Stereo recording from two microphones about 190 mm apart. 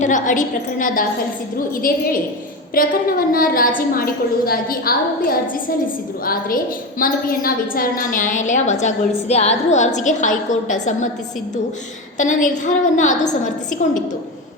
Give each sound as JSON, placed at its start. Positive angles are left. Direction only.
{"t": 0.0, "sound": "a woman's voice", "side_deg": 40}
{"t": 12.1, "sound": "a woman's voice", "side_deg": 40}